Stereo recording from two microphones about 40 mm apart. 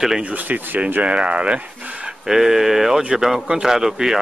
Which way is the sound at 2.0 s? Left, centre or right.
Centre.